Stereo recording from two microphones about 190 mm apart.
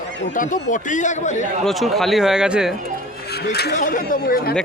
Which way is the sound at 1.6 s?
Centre (ahead or behind).